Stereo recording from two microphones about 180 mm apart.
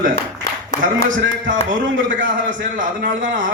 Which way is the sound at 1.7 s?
90° right.